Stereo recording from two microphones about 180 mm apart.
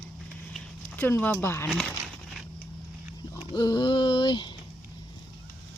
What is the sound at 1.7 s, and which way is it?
Speech, 5° left (ahead or behind).